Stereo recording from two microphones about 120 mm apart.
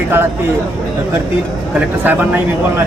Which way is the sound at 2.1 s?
15° right (ahead or behind).